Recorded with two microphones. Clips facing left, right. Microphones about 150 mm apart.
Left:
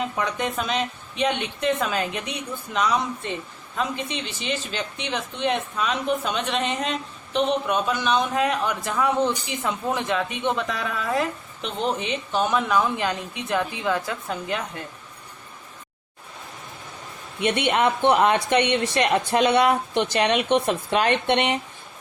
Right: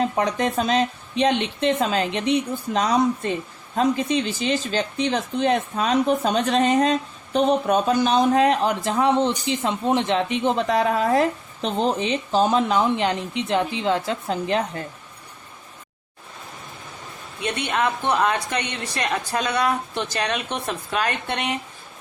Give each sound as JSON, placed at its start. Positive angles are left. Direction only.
{"t": 0.0, "sound": "speech", "side_deg": -35}
{"t": 17.7, "sound": "speech", "side_deg": 20}